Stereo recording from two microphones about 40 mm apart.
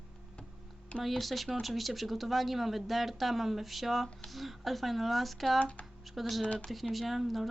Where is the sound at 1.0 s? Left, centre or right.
Centre.